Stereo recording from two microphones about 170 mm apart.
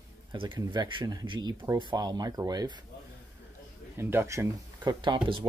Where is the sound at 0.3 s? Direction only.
25° right (ahead or behind).